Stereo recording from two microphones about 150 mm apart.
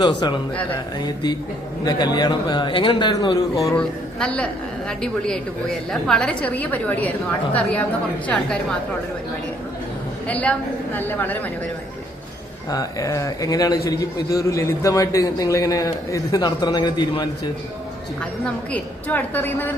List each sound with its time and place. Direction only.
0.0 s a man's voice: 30° left (ahead or behind)
3.8 s a woman's voice: 5° left (ahead or behind)
10.2 s a woman's voice: 10° left (ahead or behind)
12.7 s a man's voice: 20° left (ahead or behind)
18.7 s a woman's voice: 10° left (ahead or behind)